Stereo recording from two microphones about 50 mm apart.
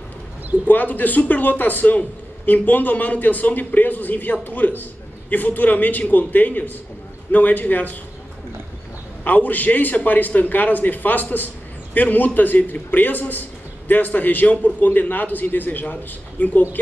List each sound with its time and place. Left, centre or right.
0.7 s a man's voice: left
9.2 s a man's voice: left